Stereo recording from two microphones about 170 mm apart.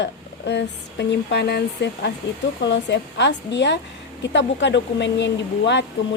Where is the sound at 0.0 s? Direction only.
90° left.